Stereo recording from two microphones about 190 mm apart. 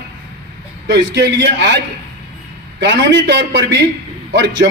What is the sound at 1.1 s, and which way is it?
Speech, 65° right (ahead or behind).